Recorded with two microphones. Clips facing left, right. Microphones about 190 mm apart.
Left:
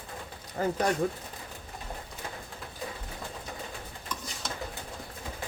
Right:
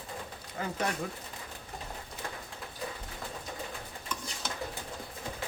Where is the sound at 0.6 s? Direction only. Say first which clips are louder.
Left 7 dB; 40° left (ahead or behind).